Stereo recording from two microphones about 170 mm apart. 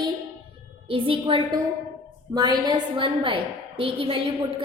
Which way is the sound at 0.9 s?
30° right (ahead or behind).